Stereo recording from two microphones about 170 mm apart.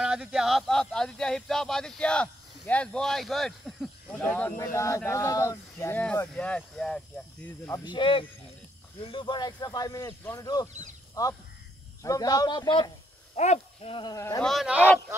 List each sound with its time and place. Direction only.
0.0 s speech: 5° right (ahead or behind); by 7.8 s 15° left (ahead or behind)
7.8 s speech: 30° left (ahead or behind)
13.4 s speech: 40° left (ahead or behind)
14.1 s speech: 20° left (ahead or behind)
14.4 s speech: centre (ahead or behind)